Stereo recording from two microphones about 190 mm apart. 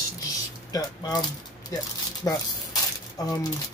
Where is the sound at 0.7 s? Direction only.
20° left (ahead or behind).